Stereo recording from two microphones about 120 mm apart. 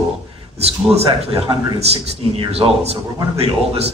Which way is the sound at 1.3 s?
55° right (ahead or behind).